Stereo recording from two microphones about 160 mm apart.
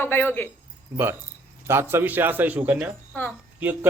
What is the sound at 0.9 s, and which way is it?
A man's voice, 15° right (ahead or behind).